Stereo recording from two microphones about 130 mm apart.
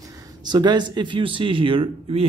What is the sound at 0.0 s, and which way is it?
Speech, 30° right (ahead or behind).